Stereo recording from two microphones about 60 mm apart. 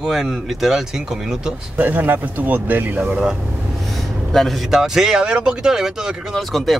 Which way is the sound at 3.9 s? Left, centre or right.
Centre.